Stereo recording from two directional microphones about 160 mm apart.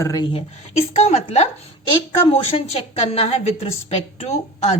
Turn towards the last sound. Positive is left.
turn(degrees=40)  # may be behind; listen again after turning